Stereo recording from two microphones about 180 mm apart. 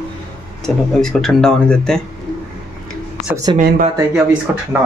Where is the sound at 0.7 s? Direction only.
Centre (ahead or behind).